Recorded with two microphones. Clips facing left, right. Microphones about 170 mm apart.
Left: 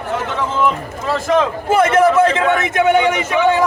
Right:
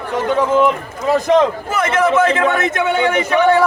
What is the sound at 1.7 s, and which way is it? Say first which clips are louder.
Speech: left 4 dB; 30° left (ahead or behind).